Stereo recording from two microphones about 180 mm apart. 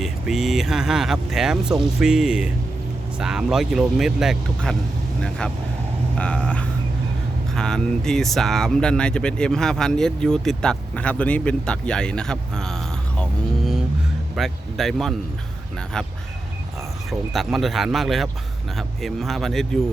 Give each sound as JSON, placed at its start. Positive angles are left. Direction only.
{"t": 0.0, "sound": "speech", "side_deg": 0}
{"t": 6.1, "sound": "speech", "side_deg": 5}
{"t": 17.1, "sound": "speech", "side_deg": 0}